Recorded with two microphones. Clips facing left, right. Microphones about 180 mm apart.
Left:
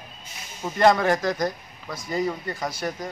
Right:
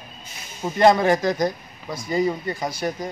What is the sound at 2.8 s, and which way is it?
Speech, 10° right (ahead or behind).